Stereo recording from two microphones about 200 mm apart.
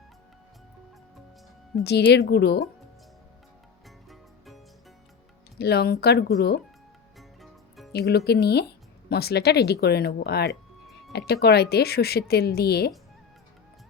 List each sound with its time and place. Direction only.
1.8 s a woman's voice: 55° left (ahead or behind)
3.8 s music: centre (ahead or behind)
5.5 s a woman's voice: 55° left (ahead or behind)
7.2 s music: centre (ahead or behind)
7.9 s a woman's voice: 55° left (ahead or behind)